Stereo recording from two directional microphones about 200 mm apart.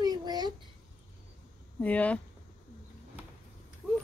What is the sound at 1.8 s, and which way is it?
Speech, 5° left (ahead or behind).